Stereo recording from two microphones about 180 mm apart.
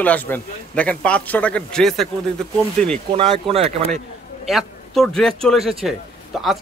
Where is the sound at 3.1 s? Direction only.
30° right (ahead or behind).